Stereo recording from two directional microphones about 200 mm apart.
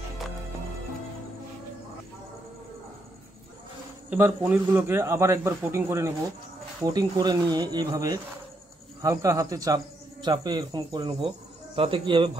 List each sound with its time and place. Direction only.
4.1 s a man's voice: 10° right (ahead or behind)
6.9 s cricket: 20° right (ahead or behind)
9.0 s a man's voice: 15° right (ahead or behind)
10.2 s cricket: 20° right (ahead or behind)